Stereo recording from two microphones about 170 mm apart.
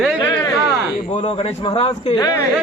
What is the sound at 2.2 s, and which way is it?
Speech, 25° left (ahead or behind).